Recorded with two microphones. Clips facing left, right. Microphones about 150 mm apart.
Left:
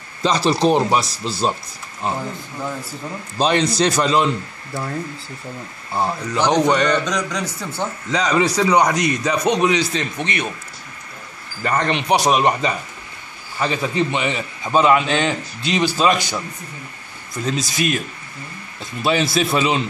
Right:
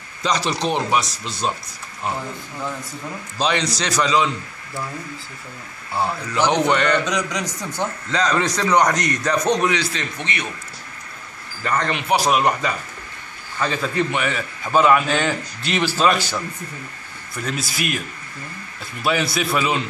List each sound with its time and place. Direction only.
0.2 s speech: 30° left (ahead or behind)
3.3 s a man's voice: 45° left (ahead or behind)
5.9 s a man's voice: 15° left (ahead or behind)
7.1 s speech: 10° right (ahead or behind)
8.1 s a man's voice: 10° left (ahead or behind)
11.6 s a man's voice: 20° left (ahead or behind)
19.3 s speech: 25° left (ahead or behind)